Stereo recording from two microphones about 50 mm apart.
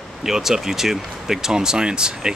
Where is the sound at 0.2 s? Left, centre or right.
Centre.